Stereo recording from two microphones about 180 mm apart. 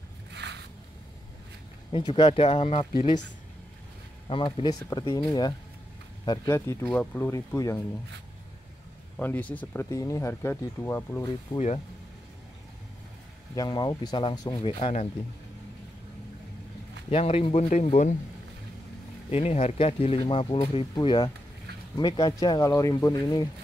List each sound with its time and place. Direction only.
0.3 s boat: 70° right (ahead or behind)
1.9 s speech: 30° left (ahead or behind)
4.3 s speech: 30° left (ahead or behind)
9.2 s speech: 10° left (ahead or behind)
11.2 s speech: 35° left (ahead or behind)
13.6 s speech: 25° left (ahead or behind)
14.6 s speech: 35° left (ahead or behind)
17.1 s speech: 35° left (ahead or behind)
19.3 s speech: 35° left (ahead or behind); by 23.5 s 20° left (ahead or behind)